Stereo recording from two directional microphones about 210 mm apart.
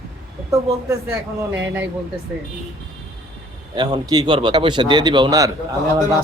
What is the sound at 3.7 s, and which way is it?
Speech, 20° right (ahead or behind).